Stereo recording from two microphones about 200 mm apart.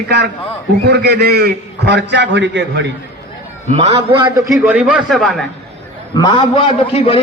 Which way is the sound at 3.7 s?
25° right (ahead or behind).